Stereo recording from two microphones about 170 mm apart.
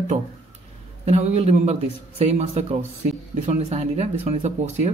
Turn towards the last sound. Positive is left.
turn(degrees=-40)  # may be behind; listen again after turning